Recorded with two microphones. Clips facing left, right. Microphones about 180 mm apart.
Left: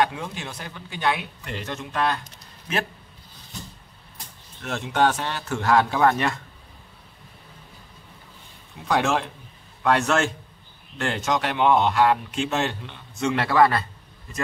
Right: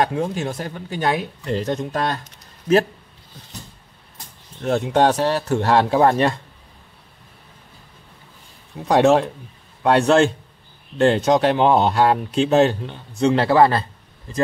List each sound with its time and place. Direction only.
0.0 s speech: 40° right (ahead or behind)
4.6 s speech: 35° right (ahead or behind)
8.8 s speech: 35° right (ahead or behind)